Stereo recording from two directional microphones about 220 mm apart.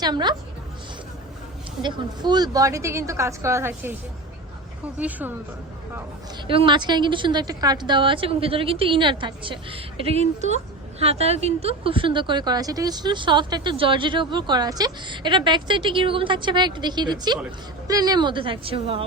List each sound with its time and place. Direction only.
0.0 s a woman's voice: 20° right (ahead or behind)
1.8 s speech: 20° right (ahead or behind)
4.9 s speech: 5° right (ahead or behind)
6.5 s a woman's voice: 25° right (ahead or behind)